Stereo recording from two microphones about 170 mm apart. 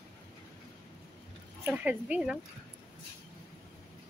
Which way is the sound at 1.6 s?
10° right (ahead or behind).